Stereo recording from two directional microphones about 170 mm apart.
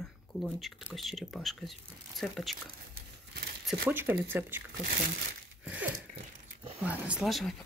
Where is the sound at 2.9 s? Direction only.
70° right (ahead or behind).